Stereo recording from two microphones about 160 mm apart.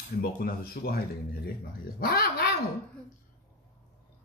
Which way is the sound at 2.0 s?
70° left (ahead or behind).